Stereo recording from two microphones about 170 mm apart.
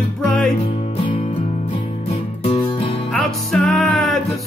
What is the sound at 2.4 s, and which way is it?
Music, 35° left (ahead or behind).